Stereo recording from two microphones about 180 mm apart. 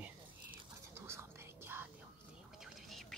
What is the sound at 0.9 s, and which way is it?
Whispering, 15° right (ahead or behind).